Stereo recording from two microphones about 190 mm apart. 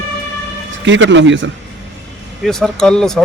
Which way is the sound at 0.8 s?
80° right.